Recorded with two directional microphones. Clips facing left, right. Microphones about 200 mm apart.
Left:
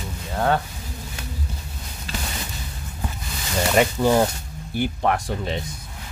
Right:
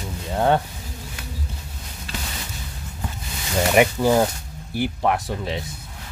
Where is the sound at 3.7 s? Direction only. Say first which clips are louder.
Right 1 dB; 10° right (ahead or behind).